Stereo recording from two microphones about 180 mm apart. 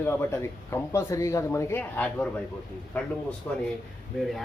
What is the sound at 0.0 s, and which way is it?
Speech, 15° left (ahead or behind).